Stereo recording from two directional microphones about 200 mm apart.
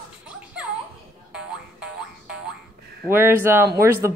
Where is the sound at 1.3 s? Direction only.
5° right (ahead or behind).